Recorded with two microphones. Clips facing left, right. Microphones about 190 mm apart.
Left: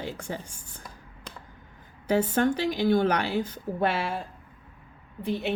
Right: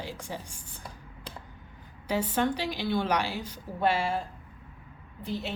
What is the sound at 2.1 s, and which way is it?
A woman's voice, 50° left (ahead or behind).